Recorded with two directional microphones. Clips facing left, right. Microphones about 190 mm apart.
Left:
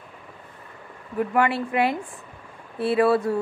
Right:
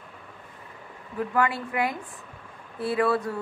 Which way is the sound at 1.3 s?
25° left (ahead or behind).